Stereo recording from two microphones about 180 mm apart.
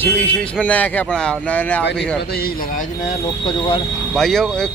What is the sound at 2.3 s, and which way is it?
Speech, 55° left (ahead or behind).